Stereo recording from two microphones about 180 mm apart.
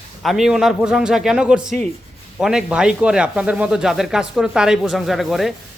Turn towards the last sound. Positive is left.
turn(degrees=0)  # may be behind; listen again after turning